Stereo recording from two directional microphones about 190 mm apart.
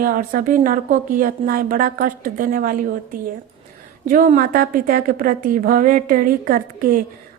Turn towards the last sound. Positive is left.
turn(degrees=-45)  # may be behind; listen again after turning